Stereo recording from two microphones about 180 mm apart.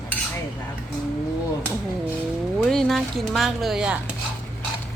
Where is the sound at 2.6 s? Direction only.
Centre (ahead or behind).